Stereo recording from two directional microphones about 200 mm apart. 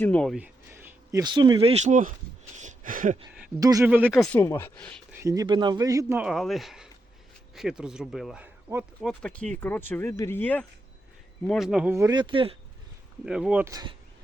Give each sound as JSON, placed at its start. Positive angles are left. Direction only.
{"t": 0.0, "sound": "speech", "side_deg": 5}
{"t": 0.3, "sound": "a sound", "side_deg": -10}
{"t": 1.2, "sound": "speech", "side_deg": -20}
{"t": 1.7, "sound": "speech", "side_deg": -35}
{"t": 3.6, "sound": "speech", "side_deg": -15}
{"t": 4.2, "sound": "speech", "side_deg": 10}
{"t": 5.2, "sound": "speech", "side_deg": -15}
{"t": 11.9, "sound": "speech", "side_deg": -20}
{"t": 13.2, "sound": "speech", "side_deg": -5}
{"t": 13.7, "sound": "speech", "side_deg": -20}